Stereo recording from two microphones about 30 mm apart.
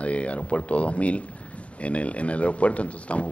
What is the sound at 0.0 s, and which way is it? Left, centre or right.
Speech, left.